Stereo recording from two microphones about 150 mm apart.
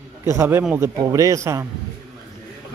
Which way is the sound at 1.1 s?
20° right (ahead or behind).